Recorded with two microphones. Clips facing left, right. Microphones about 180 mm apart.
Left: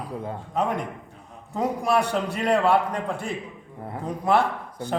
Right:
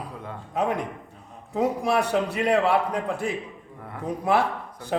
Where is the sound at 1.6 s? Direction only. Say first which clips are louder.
Even; 5° right (ahead or behind).